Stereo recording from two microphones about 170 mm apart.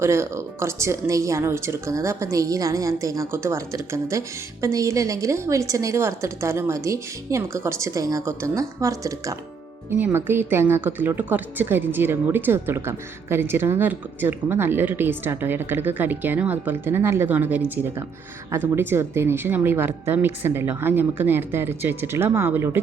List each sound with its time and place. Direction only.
0.0 s a woman's voice: 15° right (ahead or behind)